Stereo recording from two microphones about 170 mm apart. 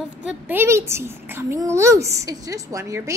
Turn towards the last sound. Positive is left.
turn(degrees=-20)  # may be behind; listen again after turning